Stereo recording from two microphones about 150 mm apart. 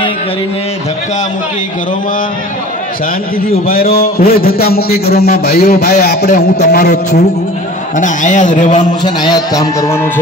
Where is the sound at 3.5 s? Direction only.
80° left.